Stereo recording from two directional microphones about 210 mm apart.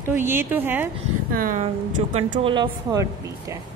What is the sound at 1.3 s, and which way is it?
Speech, 40° right (ahead or behind).